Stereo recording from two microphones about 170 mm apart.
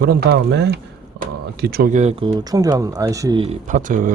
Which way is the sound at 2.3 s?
20° right (ahead or behind).